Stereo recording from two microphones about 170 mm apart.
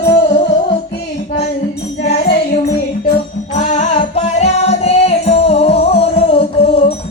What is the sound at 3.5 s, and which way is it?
Music, 45° left (ahead or behind).